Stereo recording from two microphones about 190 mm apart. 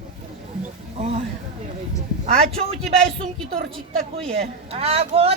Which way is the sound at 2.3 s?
30° right (ahead or behind).